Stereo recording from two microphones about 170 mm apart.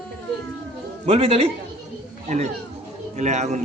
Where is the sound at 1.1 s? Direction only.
35° right (ahead or behind).